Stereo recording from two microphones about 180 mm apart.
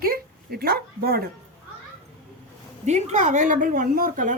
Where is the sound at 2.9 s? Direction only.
40° right (ahead or behind).